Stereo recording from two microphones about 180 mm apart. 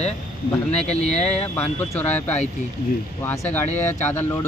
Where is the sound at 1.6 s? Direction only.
10° left (ahead or behind).